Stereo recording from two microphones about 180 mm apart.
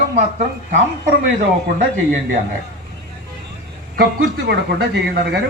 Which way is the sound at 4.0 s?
60° right (ahead or behind).